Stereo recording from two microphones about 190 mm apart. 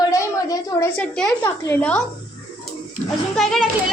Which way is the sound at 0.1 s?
20° left (ahead or behind).